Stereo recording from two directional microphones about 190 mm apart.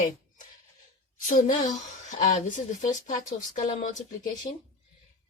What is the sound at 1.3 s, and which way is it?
Speech, 45° left (ahead or behind).